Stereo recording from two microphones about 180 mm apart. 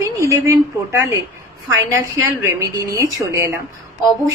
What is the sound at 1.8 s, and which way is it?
A woman's voice, 15° right (ahead or behind).